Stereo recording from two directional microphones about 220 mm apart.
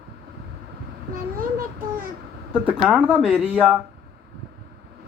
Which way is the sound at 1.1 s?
40° right (ahead or behind).